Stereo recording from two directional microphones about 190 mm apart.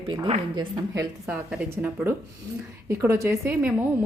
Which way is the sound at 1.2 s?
5° right (ahead or behind).